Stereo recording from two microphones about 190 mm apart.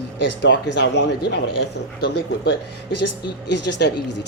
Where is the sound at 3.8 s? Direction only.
60° left (ahead or behind).